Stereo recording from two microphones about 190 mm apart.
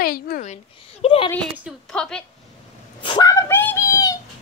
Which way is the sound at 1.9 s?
5° left (ahead or behind).